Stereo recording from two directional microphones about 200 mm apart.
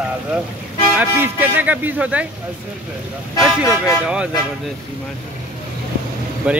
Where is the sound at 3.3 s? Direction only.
Centre (ahead or behind).